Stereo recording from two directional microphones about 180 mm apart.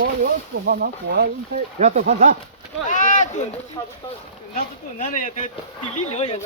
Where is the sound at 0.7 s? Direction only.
60° right (ahead or behind).